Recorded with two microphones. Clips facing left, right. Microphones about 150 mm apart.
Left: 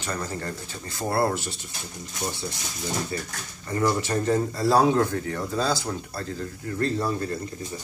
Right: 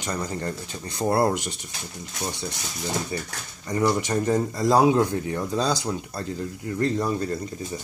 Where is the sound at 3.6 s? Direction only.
15° right (ahead or behind).